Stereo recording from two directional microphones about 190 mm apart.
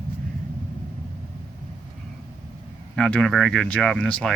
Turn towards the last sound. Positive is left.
turn(degrees=5)  # may be behind; listen again after turning